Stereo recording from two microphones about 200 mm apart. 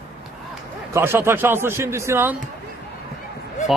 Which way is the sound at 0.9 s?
10° right (ahead or behind).